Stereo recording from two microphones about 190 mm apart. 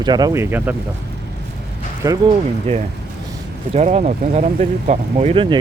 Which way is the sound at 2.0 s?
20° right (ahead or behind).